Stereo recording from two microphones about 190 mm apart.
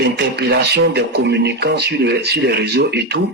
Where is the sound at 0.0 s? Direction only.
60° right (ahead or behind).